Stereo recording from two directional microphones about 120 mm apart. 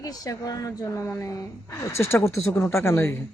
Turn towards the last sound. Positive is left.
turn(degrees=20)  # may be behind; listen again after turning